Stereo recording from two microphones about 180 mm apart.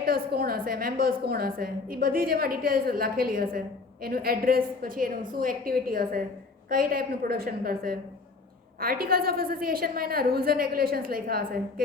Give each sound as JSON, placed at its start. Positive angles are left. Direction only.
{"t": 0.0, "sound": "a woman's voice", "side_deg": -55}